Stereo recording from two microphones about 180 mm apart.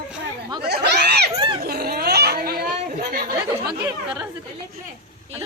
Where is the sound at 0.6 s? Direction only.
65° right (ahead or behind).